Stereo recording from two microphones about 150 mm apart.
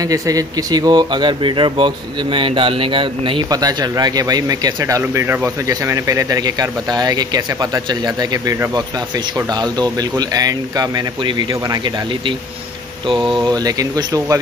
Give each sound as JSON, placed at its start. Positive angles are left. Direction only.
{"t": 0.0, "sound": "speech", "side_deg": -25}